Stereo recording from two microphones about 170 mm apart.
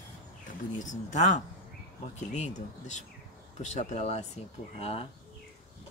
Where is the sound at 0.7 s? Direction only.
45° left (ahead or behind).